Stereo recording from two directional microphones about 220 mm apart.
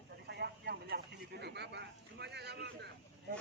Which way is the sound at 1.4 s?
50° right (ahead or behind).